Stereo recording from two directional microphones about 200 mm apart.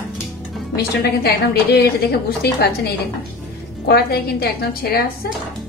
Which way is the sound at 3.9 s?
50° left (ahead or behind).